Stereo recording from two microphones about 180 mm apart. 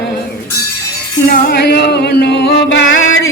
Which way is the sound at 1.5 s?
60° left (ahead or behind).